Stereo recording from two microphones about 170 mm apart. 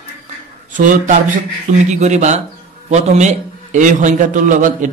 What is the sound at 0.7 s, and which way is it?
A man's voice, 50° right (ahead or behind).